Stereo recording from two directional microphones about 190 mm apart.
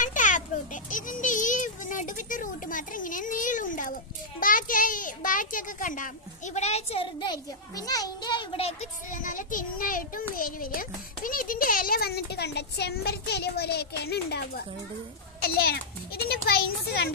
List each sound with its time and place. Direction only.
0.0 s a sound: 40° left (ahead or behind)
0.8 s a child's voice: 45° left (ahead or behind); by 8.7 s 25° left (ahead or behind)
9.1 s a child's voice: 45° left (ahead or behind)